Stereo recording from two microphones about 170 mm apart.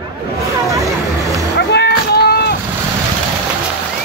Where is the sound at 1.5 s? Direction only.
75° left (ahead or behind).